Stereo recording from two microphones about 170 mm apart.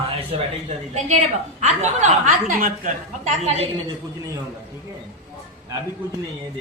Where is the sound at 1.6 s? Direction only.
45° right (ahead or behind).